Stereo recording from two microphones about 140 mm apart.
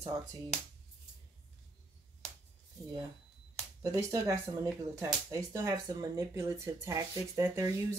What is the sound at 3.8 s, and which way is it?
Speech, 25° right (ahead or behind).